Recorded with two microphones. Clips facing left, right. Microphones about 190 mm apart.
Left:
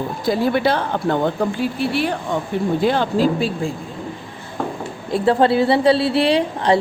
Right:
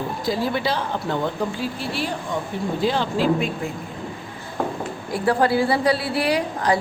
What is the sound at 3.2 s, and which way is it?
Speech, 35° left (ahead or behind).